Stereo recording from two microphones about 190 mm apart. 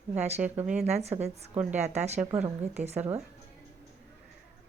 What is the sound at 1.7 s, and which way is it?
Speech, 35° right (ahead or behind).